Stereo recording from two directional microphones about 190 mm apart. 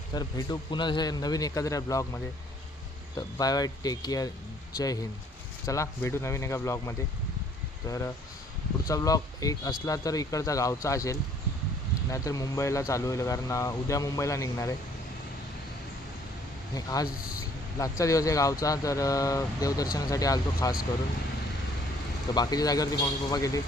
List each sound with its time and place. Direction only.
0.1 s a man's voice: 20° left (ahead or behind)
5.6 s speech: 15° left (ahead or behind)
16.7 s a man's voice: 20° left (ahead or behind)
22.4 s a man's voice: 20° left (ahead or behind)